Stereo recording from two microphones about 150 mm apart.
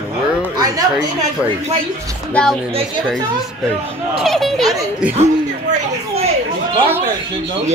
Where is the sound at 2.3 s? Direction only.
5° left (ahead or behind).